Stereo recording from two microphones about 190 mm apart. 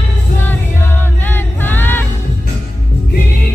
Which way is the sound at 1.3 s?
10° left (ahead or behind).